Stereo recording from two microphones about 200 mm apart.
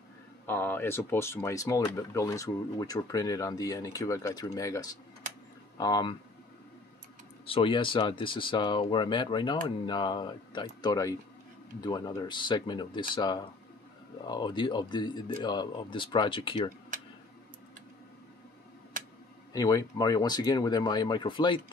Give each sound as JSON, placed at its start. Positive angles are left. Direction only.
{"t": 0.5, "sound": "speech", "side_deg": 10}
{"t": 7.4, "sound": "speech", "side_deg": 25}
{"t": 19.5, "sound": "speech", "side_deg": 20}